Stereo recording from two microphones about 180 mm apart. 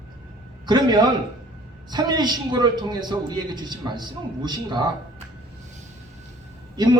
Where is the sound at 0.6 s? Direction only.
25° right (ahead or behind).